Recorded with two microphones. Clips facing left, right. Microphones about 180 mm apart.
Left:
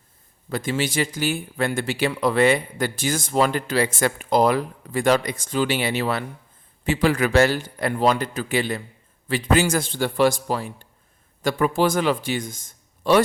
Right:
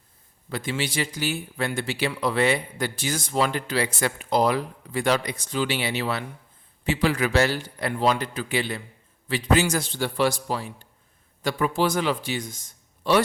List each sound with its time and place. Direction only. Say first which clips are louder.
0.5 s speech: left 4 dB; 45° left (ahead or behind)